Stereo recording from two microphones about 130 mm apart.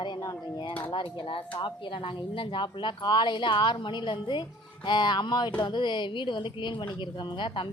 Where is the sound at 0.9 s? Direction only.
35° left (ahead or behind).